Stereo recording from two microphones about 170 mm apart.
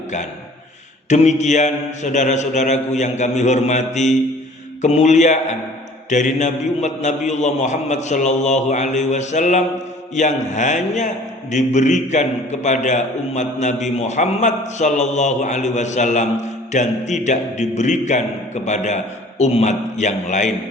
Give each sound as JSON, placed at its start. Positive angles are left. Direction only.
{"t": 1.1, "sound": "a man's voice", "side_deg": 40}